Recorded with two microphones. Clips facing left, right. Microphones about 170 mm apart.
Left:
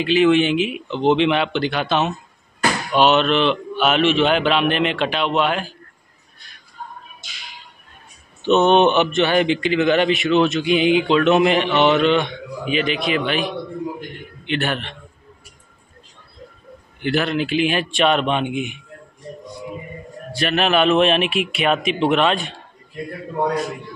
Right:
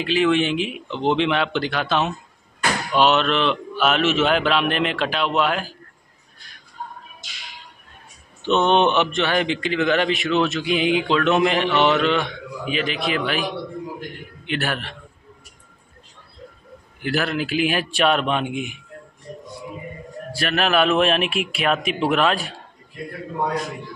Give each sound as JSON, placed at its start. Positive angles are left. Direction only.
{"t": 0.0, "sound": "a man's voice", "side_deg": 0}
{"t": 8.4, "sound": "a man's voice", "side_deg": 5}
{"t": 17.0, "sound": "a man's voice", "side_deg": -5}
{"t": 20.3, "sound": "a man's voice", "side_deg": 0}